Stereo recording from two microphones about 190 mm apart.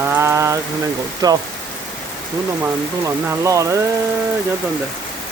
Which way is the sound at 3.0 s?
15° right (ahead or behind).